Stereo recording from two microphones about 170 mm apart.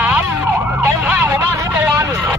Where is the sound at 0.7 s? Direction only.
10° right (ahead or behind).